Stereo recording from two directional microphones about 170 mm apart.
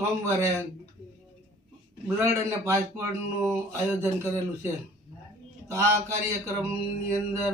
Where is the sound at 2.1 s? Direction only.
15° right (ahead or behind).